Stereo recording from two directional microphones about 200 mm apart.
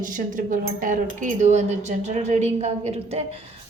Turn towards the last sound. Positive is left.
turn(degrees=-30)  # may be behind; listen again after turning